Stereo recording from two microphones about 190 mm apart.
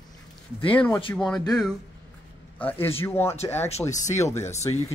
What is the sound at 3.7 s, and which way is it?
Speech, 35° left (ahead or behind).